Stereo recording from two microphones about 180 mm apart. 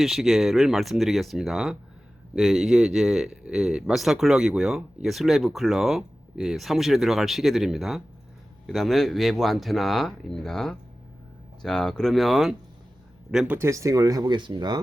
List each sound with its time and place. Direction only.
0.0 s speech: centre (ahead or behind); by 14.8 s 25° right (ahead or behind)